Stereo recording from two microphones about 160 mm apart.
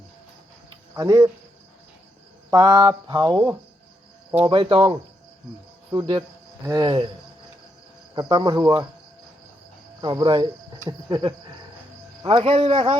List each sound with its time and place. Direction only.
0.9 s mantra: 25° right (ahead or behind)
2.5 s mantra: 25° right (ahead or behind)
4.4 s speech: 30° right (ahead or behind)
5.9 s mantra: 25° right (ahead or behind)
8.1 s mantra: 25° right (ahead or behind)
10.0 s speech: 25° right (ahead or behind)
10.8 s mantra: 25° right (ahead or behind)
12.2 s speech: 35° right (ahead or behind)